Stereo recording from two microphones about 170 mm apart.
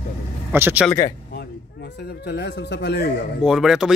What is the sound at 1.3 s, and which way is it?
Speech, 75° left (ahead or behind).